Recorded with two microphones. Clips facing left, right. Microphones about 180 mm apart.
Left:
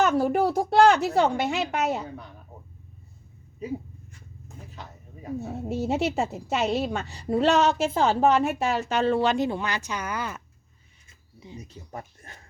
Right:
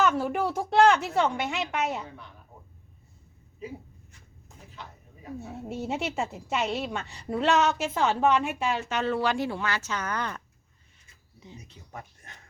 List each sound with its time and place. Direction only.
0.0 s speech: 40° left (ahead or behind)
4.4 s speech: 40° left (ahead or behind); by 11.6 s 10° left (ahead or behind)
11.7 s speech: 35° left (ahead or behind)